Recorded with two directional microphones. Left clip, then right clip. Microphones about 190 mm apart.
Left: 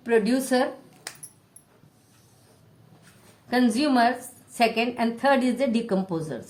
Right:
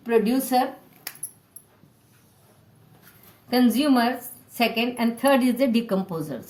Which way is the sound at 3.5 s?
20° left (ahead or behind).